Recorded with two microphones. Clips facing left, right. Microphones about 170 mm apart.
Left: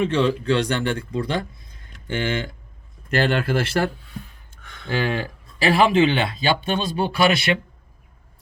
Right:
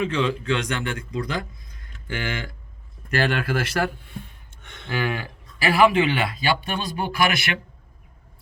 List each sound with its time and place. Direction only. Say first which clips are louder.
0.0 s a man's voice: left 4 dB; 35° left (ahead or behind)